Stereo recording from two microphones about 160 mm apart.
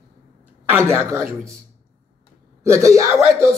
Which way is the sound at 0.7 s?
15° right (ahead or behind).